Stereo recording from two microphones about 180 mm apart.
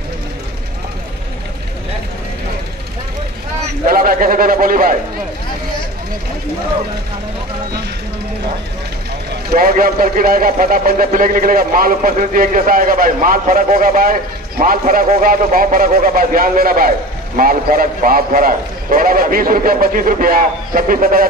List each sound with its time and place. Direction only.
3.8 s a man's voice: 50° right (ahead or behind)
9.5 s a man's voice: 50° right (ahead or behind)